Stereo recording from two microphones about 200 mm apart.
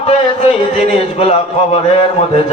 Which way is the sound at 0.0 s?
30° left (ahead or behind).